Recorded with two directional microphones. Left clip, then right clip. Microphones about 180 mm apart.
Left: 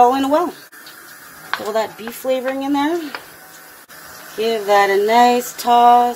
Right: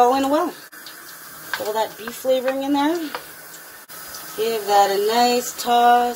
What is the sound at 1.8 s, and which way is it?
Speech, 45° left (ahead or behind).